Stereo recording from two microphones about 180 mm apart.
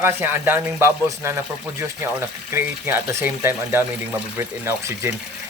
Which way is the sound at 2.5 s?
15° right (ahead or behind).